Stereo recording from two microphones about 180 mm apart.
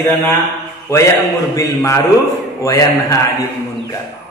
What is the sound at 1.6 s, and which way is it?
A man's voice, 15° left (ahead or behind).